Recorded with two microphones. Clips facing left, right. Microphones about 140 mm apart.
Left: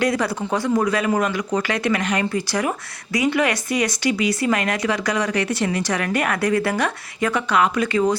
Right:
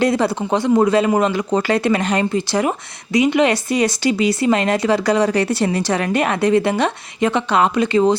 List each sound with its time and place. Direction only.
0.0 s speech: 25° right (ahead or behind)